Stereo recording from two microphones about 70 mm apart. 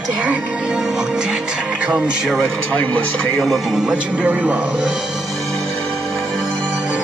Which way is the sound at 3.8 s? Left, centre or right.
Right.